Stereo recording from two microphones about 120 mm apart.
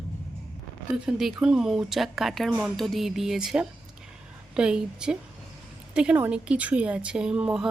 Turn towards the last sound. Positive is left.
turn(degrees=-5)  # may be behind; listen again after turning